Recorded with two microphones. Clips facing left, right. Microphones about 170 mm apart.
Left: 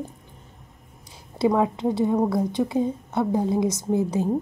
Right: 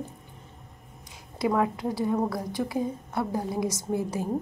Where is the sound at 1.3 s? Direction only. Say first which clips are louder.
Left 4 dB; 20° left (ahead or behind).